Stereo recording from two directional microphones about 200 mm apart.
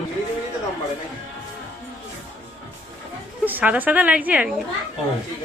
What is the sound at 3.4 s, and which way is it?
A woman's voice, 10° right (ahead or behind).